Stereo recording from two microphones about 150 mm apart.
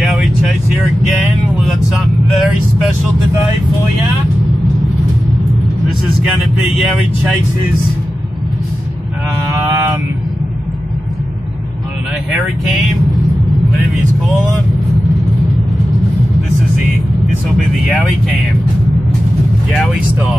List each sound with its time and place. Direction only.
0.0 s vehicle: centre (ahead or behind)
9.5 s vehicle: 15° right (ahead or behind)